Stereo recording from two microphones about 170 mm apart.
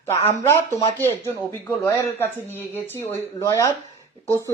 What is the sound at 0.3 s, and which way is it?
Speech, 15° left (ahead or behind).